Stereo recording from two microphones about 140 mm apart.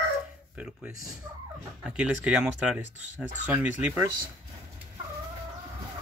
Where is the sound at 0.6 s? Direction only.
10° right (ahead or behind).